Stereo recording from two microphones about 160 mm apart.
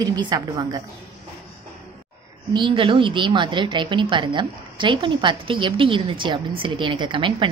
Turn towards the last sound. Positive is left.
turn(degrees=-30)  # may be behind; listen again after turning